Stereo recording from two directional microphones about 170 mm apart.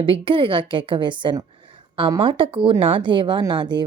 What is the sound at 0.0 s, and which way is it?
A woman's voice, 30° right (ahead or behind).